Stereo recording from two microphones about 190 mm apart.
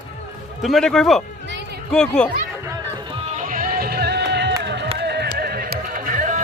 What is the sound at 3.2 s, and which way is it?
Music, 40° right (ahead or behind).